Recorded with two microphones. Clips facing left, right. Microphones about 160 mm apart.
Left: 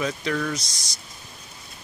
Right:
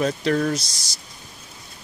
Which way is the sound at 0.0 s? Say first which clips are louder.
Right 5 dB; 40° right (ahead or behind).